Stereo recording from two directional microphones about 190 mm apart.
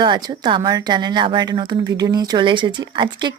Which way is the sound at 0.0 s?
25° right (ahead or behind).